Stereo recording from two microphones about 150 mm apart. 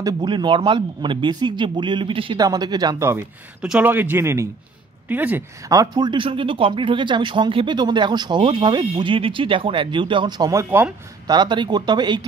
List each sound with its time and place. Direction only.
0.0 s speech: 30° right (ahead or behind); by 5.4 s 10° right (ahead or behind)
5.7 s speech: 25° right (ahead or behind)
11.2 s speech: 30° right (ahead or behind)